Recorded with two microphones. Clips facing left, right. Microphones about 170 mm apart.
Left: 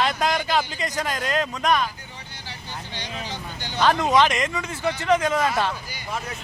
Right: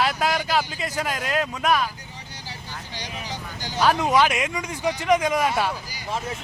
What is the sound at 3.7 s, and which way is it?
Speech, 10° right (ahead or behind).